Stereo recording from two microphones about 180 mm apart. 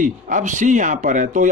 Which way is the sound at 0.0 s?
45° right (ahead or behind).